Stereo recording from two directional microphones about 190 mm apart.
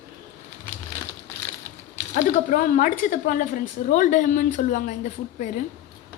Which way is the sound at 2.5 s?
45° left (ahead or behind).